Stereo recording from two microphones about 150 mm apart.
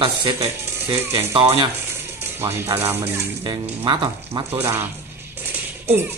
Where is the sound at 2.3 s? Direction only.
15° right (ahead or behind).